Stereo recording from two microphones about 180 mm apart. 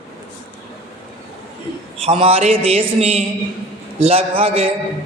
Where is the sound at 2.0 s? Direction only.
30° right (ahead or behind).